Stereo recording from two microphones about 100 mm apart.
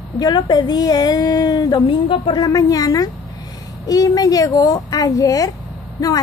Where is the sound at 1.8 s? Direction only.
60° left (ahead or behind).